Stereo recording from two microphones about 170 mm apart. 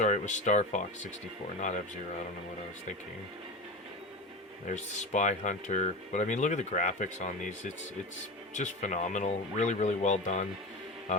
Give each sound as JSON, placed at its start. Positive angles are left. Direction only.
{"t": 0.0, "sound": "speech", "side_deg": 45}
{"t": 4.7, "sound": "speech", "side_deg": 45}